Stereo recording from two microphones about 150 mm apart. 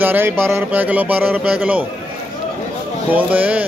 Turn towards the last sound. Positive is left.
turn(degrees=-10)  # may be behind; listen again after turning